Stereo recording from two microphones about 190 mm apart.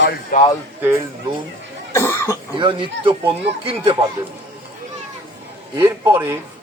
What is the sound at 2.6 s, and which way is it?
A man's voice, 25° right (ahead or behind).